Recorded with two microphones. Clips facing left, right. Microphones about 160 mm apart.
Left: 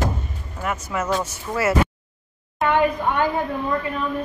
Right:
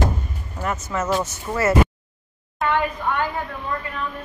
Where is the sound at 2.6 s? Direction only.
20° left (ahead or behind).